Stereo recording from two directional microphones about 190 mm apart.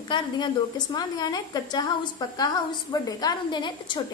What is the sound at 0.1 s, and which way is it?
A woman's voice, 20° left (ahead or behind).